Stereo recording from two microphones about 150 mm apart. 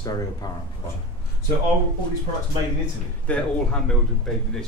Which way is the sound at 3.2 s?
5° left (ahead or behind).